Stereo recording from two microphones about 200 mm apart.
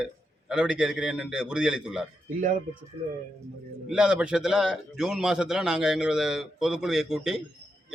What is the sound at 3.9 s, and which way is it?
A man's voice, 5° right (ahead or behind).